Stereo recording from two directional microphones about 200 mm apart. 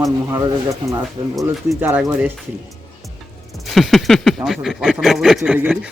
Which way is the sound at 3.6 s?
Centre (ahead or behind).